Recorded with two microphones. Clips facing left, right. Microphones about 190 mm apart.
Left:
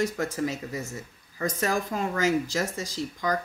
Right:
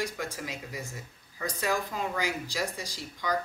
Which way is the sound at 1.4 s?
50° left (ahead or behind).